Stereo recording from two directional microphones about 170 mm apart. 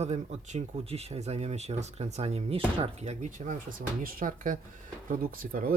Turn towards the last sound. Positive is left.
turn(degrees=-55)  # may be behind; listen again after turning